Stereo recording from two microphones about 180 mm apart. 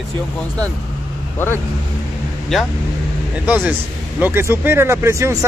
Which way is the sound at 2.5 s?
Centre (ahead or behind).